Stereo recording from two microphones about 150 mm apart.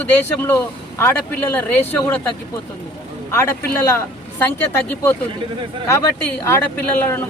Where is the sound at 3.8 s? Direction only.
20° left (ahead or behind).